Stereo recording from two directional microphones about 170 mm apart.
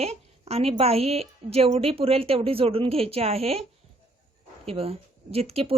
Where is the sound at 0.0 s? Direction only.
40° right (ahead or behind).